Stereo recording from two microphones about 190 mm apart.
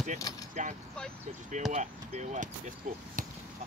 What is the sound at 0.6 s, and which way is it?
Speech, 40° right (ahead or behind).